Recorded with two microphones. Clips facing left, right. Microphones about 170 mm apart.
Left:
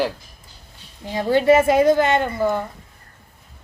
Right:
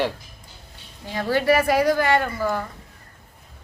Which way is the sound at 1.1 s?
20° left (ahead or behind).